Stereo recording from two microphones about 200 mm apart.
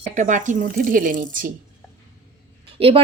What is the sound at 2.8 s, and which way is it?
Speech, 25° right (ahead or behind).